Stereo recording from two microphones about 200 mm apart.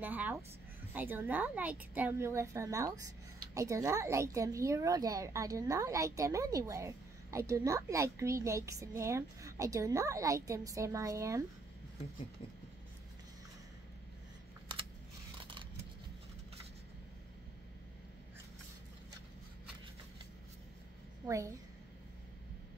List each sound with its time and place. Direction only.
0.0 s a woman's voice: 10° right (ahead or behind)
21.3 s a woman's voice: 15° right (ahead or behind)